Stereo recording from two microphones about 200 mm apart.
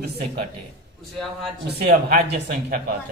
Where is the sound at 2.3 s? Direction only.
45° right (ahead or behind).